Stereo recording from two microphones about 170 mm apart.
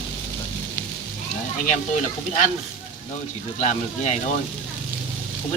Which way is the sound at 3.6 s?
45° left (ahead or behind).